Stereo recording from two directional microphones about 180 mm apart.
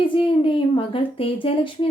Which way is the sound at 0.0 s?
30° left (ahead or behind).